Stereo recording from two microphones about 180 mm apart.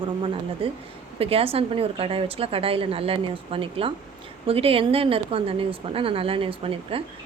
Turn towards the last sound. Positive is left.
turn(degrees=-30)  # may be behind; listen again after turning